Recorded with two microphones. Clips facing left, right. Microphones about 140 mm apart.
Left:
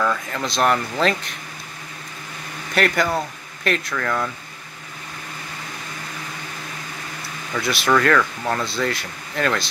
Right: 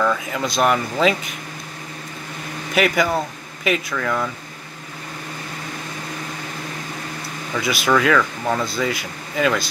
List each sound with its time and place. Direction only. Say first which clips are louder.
0.0 s speech: right 2 dB; 5° right (ahead or behind)
2.7 s speech: right 2 dB; 5° right (ahead or behind)
7.5 s speech: right 1 dB; centre (ahead or behind)